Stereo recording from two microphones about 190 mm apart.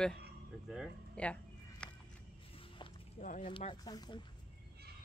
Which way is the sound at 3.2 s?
30° left (ahead or behind).